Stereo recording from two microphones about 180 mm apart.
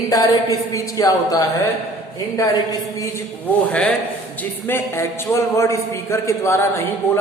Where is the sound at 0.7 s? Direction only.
20° left (ahead or behind).